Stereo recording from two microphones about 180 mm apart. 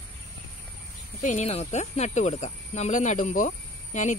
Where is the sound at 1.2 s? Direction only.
45° left (ahead or behind).